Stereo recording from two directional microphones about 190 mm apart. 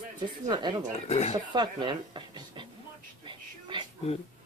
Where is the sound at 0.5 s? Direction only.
25° right (ahead or behind).